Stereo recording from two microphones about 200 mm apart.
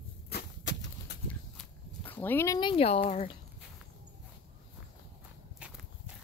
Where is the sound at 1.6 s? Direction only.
10° left (ahead or behind); by 3.2 s 30° left (ahead or behind).